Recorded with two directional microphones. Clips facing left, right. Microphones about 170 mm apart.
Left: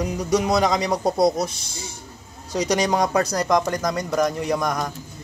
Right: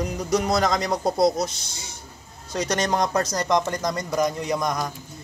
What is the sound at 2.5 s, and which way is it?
Speech, 10° left (ahead or behind).